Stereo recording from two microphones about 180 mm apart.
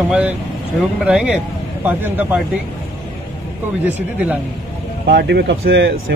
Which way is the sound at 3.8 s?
10° right (ahead or behind).